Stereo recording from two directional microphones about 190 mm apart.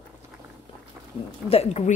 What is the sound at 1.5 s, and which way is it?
Speech, 35° left (ahead or behind).